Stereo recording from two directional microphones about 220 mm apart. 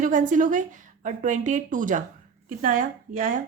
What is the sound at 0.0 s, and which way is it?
Speech, 35° right (ahead or behind).